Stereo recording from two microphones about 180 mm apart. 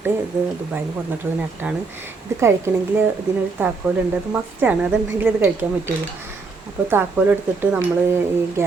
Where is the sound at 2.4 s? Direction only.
15° right (ahead or behind).